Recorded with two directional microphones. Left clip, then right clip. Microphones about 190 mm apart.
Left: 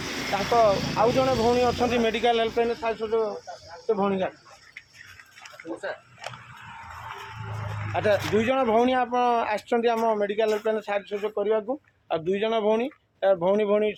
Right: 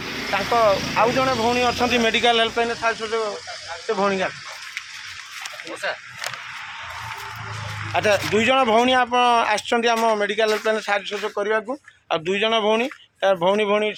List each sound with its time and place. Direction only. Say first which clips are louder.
0.1 s a sound: right 3 dB; 35° right (ahead or behind)
0.5 s speech: right 3 dB; 20° right (ahead or behind)
1.1 s speech: right 2 dB; 10° right (ahead or behind)
7.9 s speech: right 4 dB; 20° right (ahead or behind)